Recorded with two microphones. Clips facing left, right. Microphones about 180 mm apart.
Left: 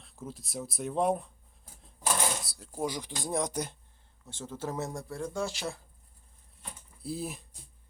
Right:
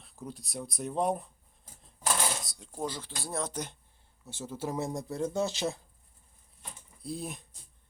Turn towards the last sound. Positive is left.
turn(degrees=0)  # may be behind; listen again after turning